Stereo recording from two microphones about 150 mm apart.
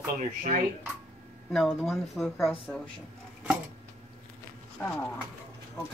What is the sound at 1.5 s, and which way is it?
Speech, centre (ahead or behind).